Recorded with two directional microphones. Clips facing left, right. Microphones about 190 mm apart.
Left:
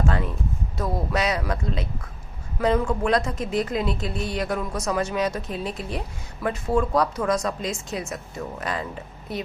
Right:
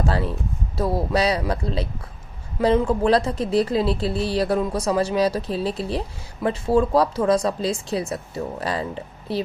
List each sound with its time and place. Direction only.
0.0 s a sound: 35° right (ahead or behind)
0.7 s speech: 30° right (ahead or behind)
2.9 s speech: 35° right (ahead or behind)